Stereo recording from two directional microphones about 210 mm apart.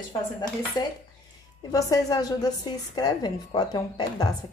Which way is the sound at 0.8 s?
20° left (ahead or behind).